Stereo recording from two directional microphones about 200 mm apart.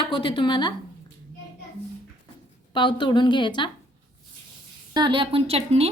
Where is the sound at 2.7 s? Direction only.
25° left (ahead or behind).